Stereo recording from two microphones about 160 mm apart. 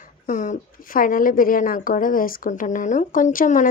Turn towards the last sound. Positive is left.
turn(degrees=55)  # may be behind; listen again after turning